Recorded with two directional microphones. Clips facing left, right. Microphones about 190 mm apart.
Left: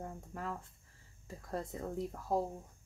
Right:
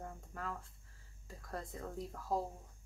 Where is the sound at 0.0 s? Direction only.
20° left (ahead or behind).